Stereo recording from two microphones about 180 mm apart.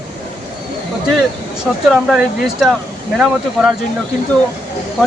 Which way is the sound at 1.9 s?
5° right (ahead or behind).